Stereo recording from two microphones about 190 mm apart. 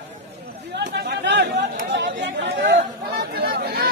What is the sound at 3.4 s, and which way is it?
Chatter, 50° right (ahead or behind).